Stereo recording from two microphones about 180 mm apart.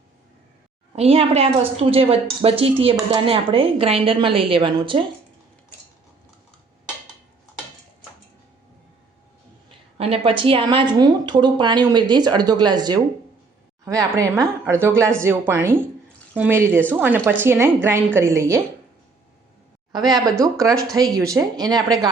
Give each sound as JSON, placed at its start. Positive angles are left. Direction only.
{"t": 0.9, "sound": "a woman's voice", "side_deg": -35}
{"t": 10.0, "sound": "speech", "side_deg": -30}
{"t": 19.9, "sound": "speech", "side_deg": -20}